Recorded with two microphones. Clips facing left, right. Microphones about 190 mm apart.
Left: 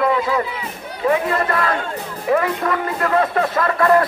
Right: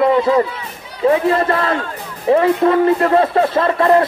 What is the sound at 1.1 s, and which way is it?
Speech, 30° right (ahead or behind).